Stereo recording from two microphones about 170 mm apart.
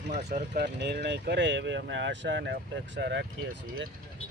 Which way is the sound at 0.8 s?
80° right.